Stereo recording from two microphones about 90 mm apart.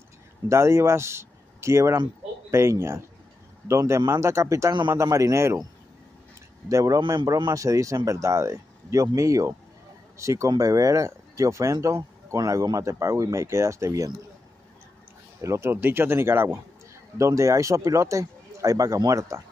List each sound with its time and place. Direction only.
0.5 s speech: 35° right (ahead or behind)
6.7 s speech: 40° right (ahead or behind)
15.4 s speech: 30° right (ahead or behind)
17.2 s speech: 35° right (ahead or behind)